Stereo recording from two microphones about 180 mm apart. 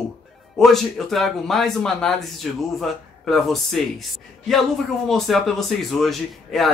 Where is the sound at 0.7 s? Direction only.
Centre (ahead or behind).